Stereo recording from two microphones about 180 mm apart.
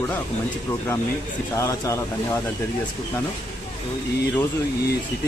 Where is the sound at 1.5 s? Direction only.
15° left (ahead or behind).